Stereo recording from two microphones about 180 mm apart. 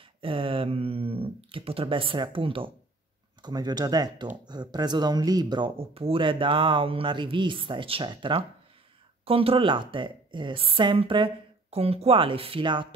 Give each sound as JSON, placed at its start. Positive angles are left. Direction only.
{"t": 0.2, "sound": "speech", "side_deg": -30}